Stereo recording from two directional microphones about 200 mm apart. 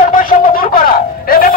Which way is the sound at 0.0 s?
40° left (ahead or behind).